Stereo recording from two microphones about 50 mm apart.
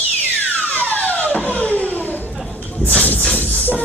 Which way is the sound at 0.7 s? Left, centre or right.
Left.